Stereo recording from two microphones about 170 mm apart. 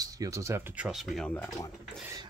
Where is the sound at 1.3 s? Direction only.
10° left (ahead or behind).